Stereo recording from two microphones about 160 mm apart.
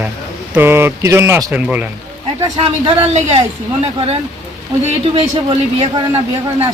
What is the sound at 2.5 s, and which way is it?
Speech, 35° right (ahead or behind).